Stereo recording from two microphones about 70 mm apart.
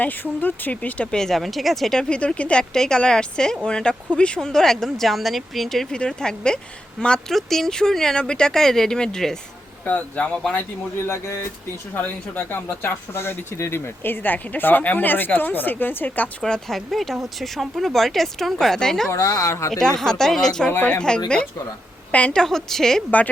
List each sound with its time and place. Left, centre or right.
0.0 s speech: left; by 2.0 s centre
2.0 s speech: centre
9.8 s speech: left
11.0 s speech: left
11.9 s speech: left
16.4 s speech: centre
19.1 s speech: left
19.8 s speech: centre
20.7 s speech: left
22.1 s speech: centre
22.4 s speech: centre